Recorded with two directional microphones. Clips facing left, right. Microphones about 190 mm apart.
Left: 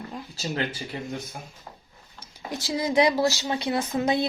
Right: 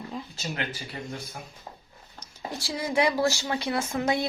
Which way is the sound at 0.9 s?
20° left (ahead or behind).